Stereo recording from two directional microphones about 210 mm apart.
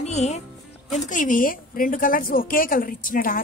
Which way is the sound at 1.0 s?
40° left (ahead or behind).